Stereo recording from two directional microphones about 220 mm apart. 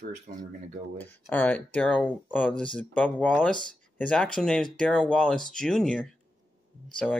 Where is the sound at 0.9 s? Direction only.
10° left (ahead or behind).